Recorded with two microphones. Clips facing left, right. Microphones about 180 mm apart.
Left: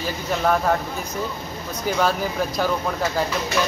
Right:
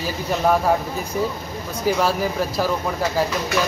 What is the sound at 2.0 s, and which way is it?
Speech, 5° right (ahead or behind).